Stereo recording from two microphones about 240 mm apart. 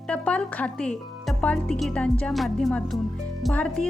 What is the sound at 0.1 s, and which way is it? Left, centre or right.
Speech, centre.